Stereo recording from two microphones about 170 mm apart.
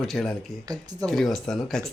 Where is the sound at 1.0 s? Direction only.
Centre (ahead or behind).